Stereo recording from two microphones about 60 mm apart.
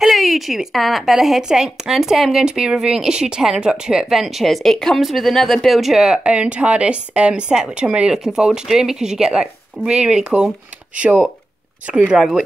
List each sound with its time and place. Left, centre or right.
0.0 s speech: centre
11.0 s speech: right; by 12.4 s centre